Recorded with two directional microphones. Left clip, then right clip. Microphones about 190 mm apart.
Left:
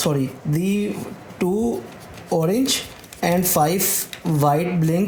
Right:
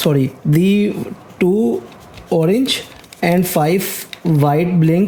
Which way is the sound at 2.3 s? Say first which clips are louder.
Right 5 dB; 40° right (ahead or behind).